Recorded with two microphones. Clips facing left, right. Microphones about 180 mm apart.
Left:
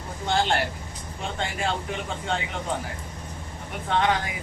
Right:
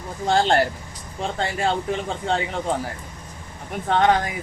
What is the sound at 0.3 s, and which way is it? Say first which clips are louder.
Speech: right 5 dB; 35° right (ahead or behind).